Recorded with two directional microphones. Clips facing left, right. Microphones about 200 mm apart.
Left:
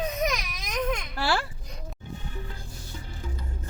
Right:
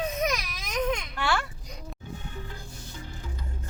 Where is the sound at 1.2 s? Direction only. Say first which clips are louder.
Left 3 dB; 35° left (ahead or behind).